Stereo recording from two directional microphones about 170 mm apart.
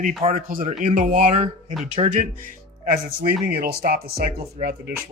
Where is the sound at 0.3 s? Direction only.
55° right (ahead or behind).